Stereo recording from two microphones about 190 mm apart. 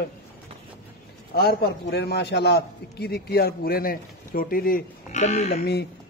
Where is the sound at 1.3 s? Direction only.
55° left (ahead or behind); by 5.5 s 40° left (ahead or behind).